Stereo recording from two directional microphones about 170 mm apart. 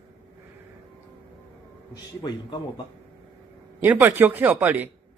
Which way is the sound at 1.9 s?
25° left (ahead or behind).